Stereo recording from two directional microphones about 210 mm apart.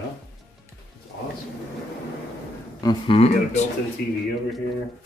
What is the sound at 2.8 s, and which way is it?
Speech, 25° left (ahead or behind).